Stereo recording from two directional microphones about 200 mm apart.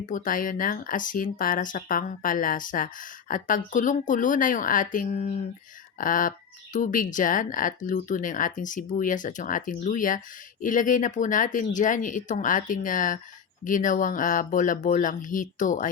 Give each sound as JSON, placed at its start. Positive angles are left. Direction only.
{"t": 0.0, "sound": "speech", "side_deg": 40}